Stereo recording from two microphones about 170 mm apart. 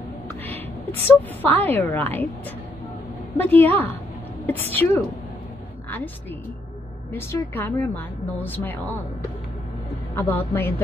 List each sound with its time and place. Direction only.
1.0 s a woman's voice: 10° left (ahead or behind)
3.3 s a woman's voice: 10° left (ahead or behind)
7.1 s a woman's voice: 15° left (ahead or behind)
10.1 s a woman's voice: 10° left (ahead or behind)